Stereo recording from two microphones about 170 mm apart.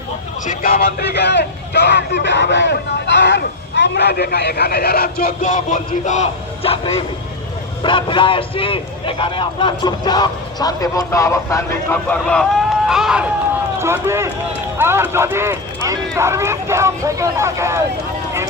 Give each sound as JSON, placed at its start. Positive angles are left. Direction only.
{"t": 0.4, "sound": "a man's voice", "side_deg": 60}
{"t": 12.1, "sound": "speech", "side_deg": 5}
{"t": 13.7, "sound": "speech", "side_deg": -15}